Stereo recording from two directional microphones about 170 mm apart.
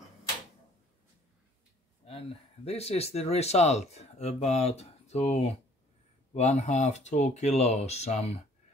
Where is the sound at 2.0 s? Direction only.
35° left (ahead or behind).